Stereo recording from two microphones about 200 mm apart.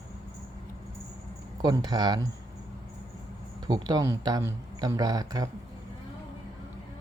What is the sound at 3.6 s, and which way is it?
A man's voice, 20° right (ahead or behind).